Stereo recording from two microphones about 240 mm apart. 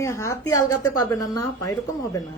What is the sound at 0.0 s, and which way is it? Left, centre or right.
A woman's voice, centre.